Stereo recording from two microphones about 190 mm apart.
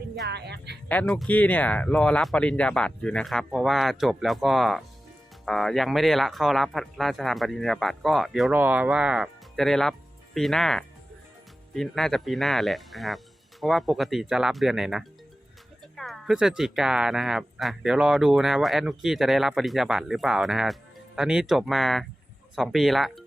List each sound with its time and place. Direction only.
0.3 s music: 60° right (ahead or behind)
0.9 s speech: 5° left (ahead or behind)